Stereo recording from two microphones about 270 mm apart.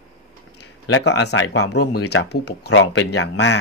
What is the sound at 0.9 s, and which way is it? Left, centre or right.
Speech, left.